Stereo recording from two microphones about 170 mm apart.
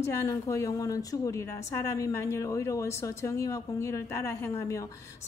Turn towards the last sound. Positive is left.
turn(degrees=20)  # may be behind; listen again after turning